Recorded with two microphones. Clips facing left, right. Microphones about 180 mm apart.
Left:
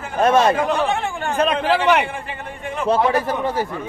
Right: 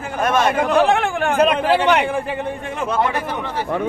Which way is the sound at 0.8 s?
90° right.